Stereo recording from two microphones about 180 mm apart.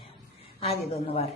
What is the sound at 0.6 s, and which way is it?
Speech, 35° left (ahead or behind).